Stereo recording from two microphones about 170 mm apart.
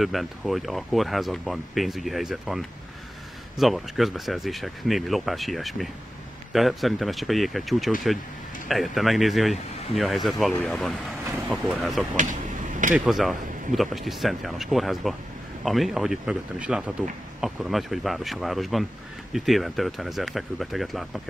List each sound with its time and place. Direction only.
0.0 s speech: centre (ahead or behind)
12.2 s a sound: 50° right (ahead or behind)
12.9 s speech: centre (ahead or behind)